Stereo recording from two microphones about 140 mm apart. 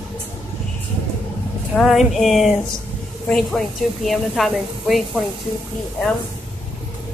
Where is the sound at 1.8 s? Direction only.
Centre (ahead or behind).